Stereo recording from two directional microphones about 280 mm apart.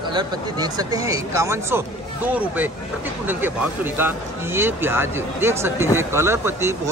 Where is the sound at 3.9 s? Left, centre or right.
Centre.